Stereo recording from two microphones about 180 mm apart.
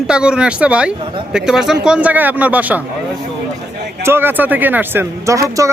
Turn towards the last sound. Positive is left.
turn(degrees=-15)  # may be behind; listen again after turning